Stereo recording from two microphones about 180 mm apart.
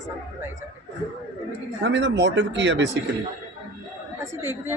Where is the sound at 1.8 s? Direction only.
90° right.